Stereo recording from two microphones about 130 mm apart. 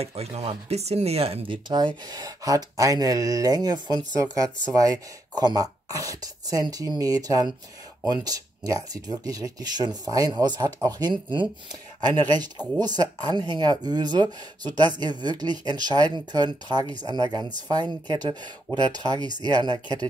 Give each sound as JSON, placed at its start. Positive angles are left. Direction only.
{"t": 0.0, "sound": "speech", "side_deg": -50}
{"t": 18.7, "sound": "speech", "side_deg": 0}
{"t": 19.1, "sound": "speech", "side_deg": -30}